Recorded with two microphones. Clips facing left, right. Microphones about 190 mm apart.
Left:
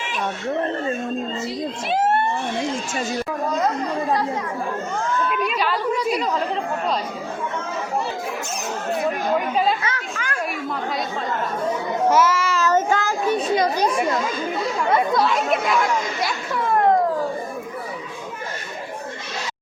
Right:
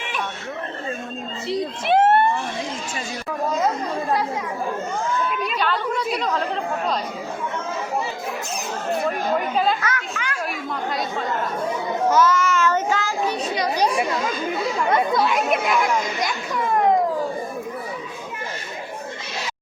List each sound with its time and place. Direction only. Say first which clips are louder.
1.5 s speech: right 3 dB; 60° right (ahead or behind)
5.3 s chatter: left 1 dB; centre (ahead or behind)
8.9 s speech: left 1 dB; 5° left (ahead or behind)
10.2 s chatter: even; 40° left (ahead or behind)
12.1 s children playing: right 3 dB; 25° left (ahead or behind); by 13.8 s 50° left (ahead or behind)
14.5 s speech: left 1 dB; centre (ahead or behind)